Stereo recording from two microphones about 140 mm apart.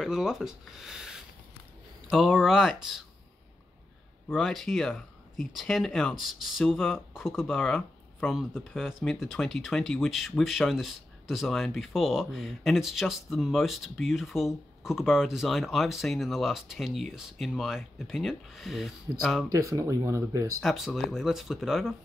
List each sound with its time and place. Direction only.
0.0 s speech: 5° right (ahead or behind)
4.3 s speech: centre (ahead or behind)
19.5 s speech: 25° right (ahead or behind)
20.6 s speech: centre (ahead or behind)